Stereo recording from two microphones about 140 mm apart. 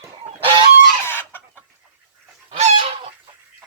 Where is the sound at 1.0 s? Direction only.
15° left (ahead or behind).